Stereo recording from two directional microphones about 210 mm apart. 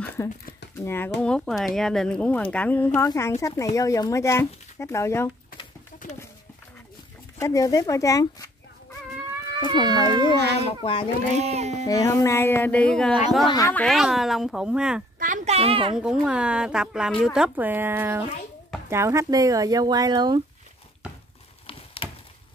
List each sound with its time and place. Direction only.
0.2 s speech: 15° left (ahead or behind)
7.3 s speech: 15° left (ahead or behind)
9.7 s a child's voice: 20° right (ahead or behind)
10.8 s a child's voice: 25° left (ahead or behind)
11.3 s speech: 30° right (ahead or behind)
11.8 s speech: 15° left (ahead or behind); by 15.0 s 5° right (ahead or behind)
15.1 s a sound: 35° right (ahead or behind)
16.0 s speech: 5° right (ahead or behind); by 20.4 s 20° right (ahead or behind)
21.6 s a sound: 25° left (ahead or behind)